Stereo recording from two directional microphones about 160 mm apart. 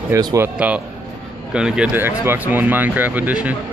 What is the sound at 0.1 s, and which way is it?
Speech, 20° right (ahead or behind).